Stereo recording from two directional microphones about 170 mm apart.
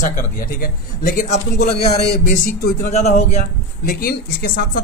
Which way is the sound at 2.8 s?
40° left (ahead or behind).